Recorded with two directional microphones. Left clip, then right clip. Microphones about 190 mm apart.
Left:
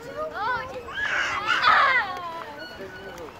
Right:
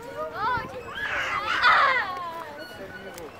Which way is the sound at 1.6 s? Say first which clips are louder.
Even; 5° right (ahead or behind).